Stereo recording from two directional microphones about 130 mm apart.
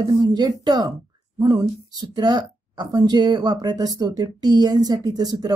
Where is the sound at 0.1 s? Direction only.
30° right (ahead or behind).